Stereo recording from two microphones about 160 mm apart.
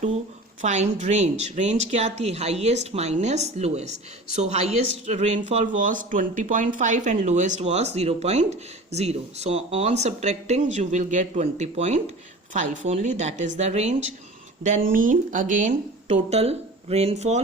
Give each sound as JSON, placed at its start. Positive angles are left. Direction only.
{"t": 0.6, "sound": "speech", "side_deg": -45}
{"t": 14.6, "sound": "speech", "side_deg": -55}